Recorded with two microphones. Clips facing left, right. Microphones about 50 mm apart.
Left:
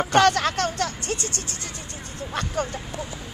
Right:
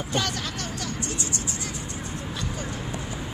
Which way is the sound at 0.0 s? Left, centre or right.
Left.